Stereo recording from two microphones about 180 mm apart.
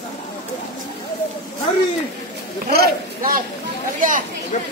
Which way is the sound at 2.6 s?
60° right (ahead or behind).